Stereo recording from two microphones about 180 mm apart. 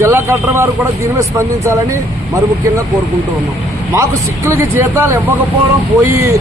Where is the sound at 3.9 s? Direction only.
15° right (ahead or behind).